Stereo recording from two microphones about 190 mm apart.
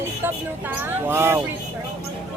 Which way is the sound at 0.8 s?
10° right (ahead or behind).